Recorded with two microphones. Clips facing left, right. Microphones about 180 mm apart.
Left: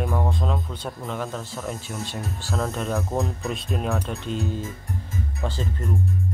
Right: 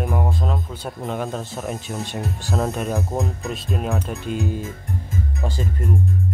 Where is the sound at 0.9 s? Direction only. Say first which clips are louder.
Right 6 dB; 20° right (ahead or behind).